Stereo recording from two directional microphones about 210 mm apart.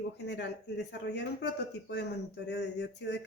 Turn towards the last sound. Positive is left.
turn(degrees=55)  # may be behind; listen again after turning